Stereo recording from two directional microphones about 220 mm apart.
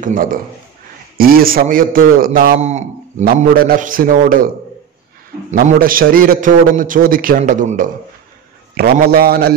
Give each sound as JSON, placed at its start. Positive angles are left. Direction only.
{"t": 0.0, "sound": "a man's voice", "side_deg": -35}
{"t": 5.5, "sound": "a man's voice", "side_deg": -40}